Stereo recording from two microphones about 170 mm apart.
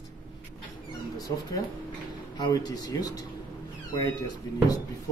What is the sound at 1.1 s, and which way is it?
A man's voice, 20° left (ahead or behind).